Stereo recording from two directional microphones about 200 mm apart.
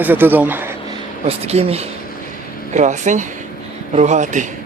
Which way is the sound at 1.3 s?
30° right (ahead or behind).